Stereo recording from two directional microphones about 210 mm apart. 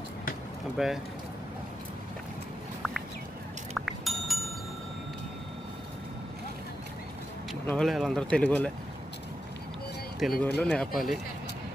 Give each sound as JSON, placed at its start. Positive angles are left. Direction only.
{"t": 0.8, "sound": "speech", "side_deg": 0}
{"t": 3.7, "sound": "music", "side_deg": 0}
{"t": 7.6, "sound": "speech", "side_deg": 5}
{"t": 10.2, "sound": "speech", "side_deg": 0}